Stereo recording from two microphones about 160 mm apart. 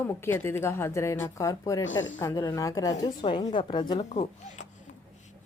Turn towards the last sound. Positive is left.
turn(degrees=45)  # may be behind; listen again after turning